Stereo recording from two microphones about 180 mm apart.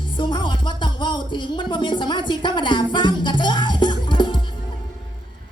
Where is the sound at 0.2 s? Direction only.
25° left (ahead or behind).